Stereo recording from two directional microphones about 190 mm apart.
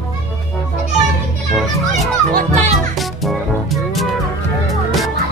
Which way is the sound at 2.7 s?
Centre (ahead or behind).